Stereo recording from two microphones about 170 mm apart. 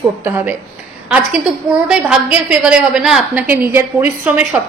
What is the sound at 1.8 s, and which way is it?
A woman's voice, 5° right (ahead or behind).